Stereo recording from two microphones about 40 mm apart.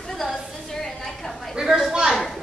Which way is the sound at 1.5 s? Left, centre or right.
Centre.